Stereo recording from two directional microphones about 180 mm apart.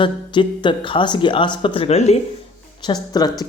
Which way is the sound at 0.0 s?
25° left (ahead or behind).